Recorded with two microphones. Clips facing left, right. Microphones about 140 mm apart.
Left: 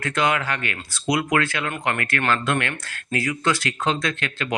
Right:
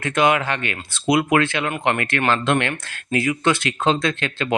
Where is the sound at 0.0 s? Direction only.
20° right (ahead or behind).